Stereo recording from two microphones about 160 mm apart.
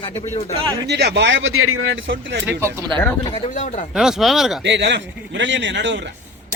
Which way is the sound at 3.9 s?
5° right (ahead or behind).